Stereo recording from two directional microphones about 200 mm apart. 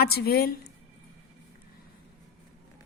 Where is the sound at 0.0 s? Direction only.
50° left (ahead or behind).